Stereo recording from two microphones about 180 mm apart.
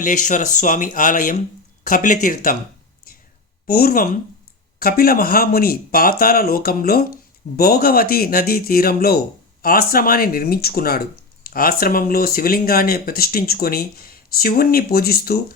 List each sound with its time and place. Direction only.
0.0 s speech: 45° left (ahead or behind)
3.7 s speech: 55° left (ahead or behind)